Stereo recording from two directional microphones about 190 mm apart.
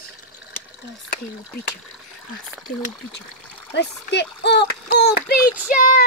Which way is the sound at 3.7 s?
65° left (ahead or behind).